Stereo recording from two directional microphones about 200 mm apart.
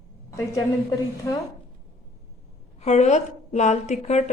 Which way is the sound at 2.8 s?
35° left (ahead or behind).